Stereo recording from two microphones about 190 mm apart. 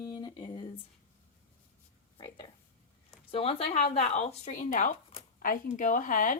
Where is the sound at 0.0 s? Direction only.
20° left (ahead or behind).